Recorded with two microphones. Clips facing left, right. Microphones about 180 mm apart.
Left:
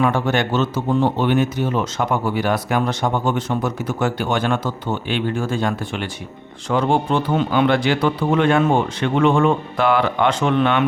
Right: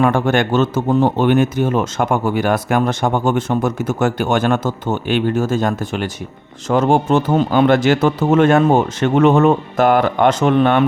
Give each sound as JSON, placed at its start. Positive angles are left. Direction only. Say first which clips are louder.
{"t": 0.0, "sound": "speech", "louder": "right 4 dB", "side_deg": -50}